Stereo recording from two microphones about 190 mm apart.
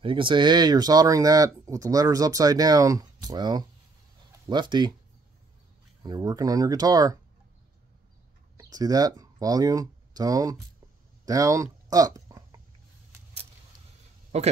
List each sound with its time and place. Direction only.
0.0 s speech: 25° right (ahead or behind)
6.0 s speech: 20° right (ahead or behind)
8.5 s speech: 20° right (ahead or behind)
11.2 s a sound: 20° right (ahead or behind)